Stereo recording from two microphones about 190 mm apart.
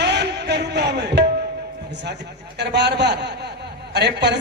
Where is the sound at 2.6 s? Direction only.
60° right (ahead or behind).